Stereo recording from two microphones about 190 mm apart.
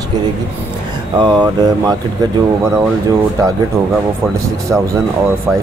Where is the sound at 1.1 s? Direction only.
20° right (ahead or behind).